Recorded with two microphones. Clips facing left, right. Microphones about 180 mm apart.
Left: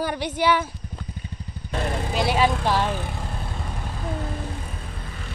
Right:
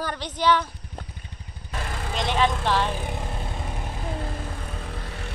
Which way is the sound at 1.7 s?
35° left (ahead or behind).